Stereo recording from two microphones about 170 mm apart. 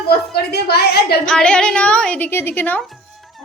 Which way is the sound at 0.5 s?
70° left (ahead or behind).